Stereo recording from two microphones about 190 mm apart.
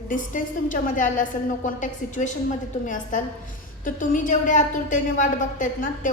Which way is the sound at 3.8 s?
45° left (ahead or behind).